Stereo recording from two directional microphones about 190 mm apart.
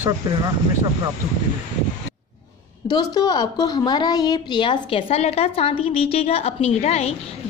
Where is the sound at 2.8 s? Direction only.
20° left (ahead or behind).